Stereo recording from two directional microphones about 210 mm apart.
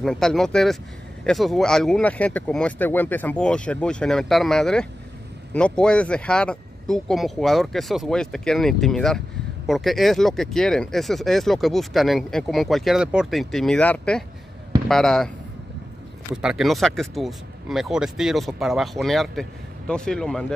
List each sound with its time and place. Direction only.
0.0 s speech: centre (ahead or behind)
16.3 s speech: 5° right (ahead or behind)